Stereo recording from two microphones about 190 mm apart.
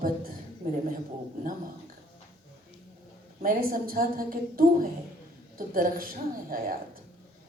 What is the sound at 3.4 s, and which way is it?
Speech, 50° right (ahead or behind).